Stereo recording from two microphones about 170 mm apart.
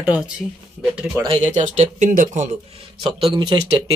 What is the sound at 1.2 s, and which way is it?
Speech, 30° right (ahead or behind).